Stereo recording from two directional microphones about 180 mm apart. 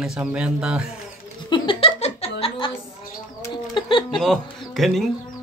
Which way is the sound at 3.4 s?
25° left (ahead or behind).